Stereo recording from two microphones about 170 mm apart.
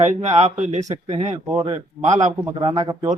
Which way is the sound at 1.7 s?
45° right (ahead or behind).